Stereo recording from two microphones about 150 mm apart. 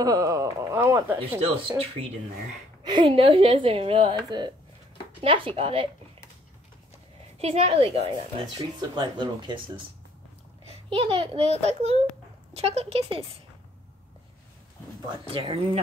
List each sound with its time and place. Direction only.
0.0 s speech: 25° right (ahead or behind)
1.7 s a woman's voice: 40° right (ahead or behind)
7.3 s a child's voice: 40° right (ahead or behind)
8.9 s speech: 30° right (ahead or behind)
10.7 s a child's voice: 40° right (ahead or behind)
15.3 s a woman's voice: 40° right (ahead or behind)